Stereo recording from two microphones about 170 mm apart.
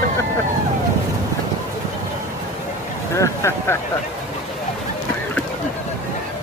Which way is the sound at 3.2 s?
15° left (ahead or behind).